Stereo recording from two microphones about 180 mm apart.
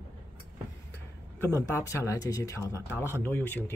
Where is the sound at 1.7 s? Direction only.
15° left (ahead or behind).